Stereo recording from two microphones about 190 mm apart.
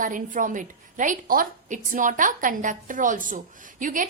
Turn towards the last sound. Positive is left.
turn(degrees=-45)  # may be behind; listen again after turning